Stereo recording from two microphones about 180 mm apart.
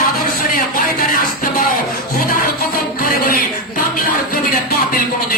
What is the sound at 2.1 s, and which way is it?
Music, 55° left (ahead or behind).